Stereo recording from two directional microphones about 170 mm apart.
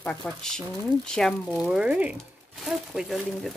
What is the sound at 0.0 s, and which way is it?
Speech, 5° left (ahead or behind).